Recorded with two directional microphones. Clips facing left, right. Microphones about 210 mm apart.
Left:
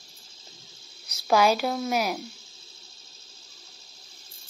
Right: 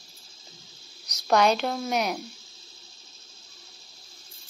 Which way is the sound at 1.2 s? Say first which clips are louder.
Even; 5° left (ahead or behind).